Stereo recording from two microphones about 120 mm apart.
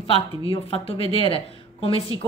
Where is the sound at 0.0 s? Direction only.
50° left (ahead or behind).